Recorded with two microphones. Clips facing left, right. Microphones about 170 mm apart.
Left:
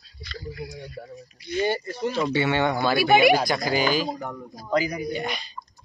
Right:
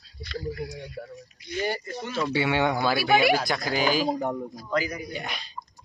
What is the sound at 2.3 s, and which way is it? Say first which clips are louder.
Speech: right 1 dB; 5° right (ahead or behind).